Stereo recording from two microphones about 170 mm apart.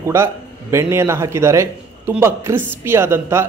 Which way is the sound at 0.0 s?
15° right (ahead or behind).